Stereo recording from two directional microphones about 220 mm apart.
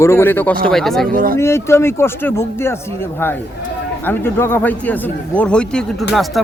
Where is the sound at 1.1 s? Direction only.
40° right (ahead or behind).